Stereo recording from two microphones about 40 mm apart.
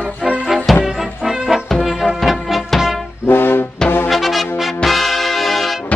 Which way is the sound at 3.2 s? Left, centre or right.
Left.